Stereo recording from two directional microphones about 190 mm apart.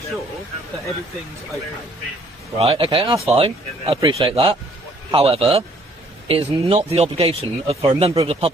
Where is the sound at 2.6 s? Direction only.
30° right (ahead or behind).